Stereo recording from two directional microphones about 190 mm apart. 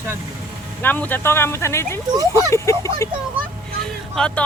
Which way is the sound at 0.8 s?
10° left (ahead or behind).